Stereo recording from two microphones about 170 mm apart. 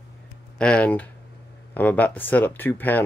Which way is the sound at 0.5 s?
5° left (ahead or behind).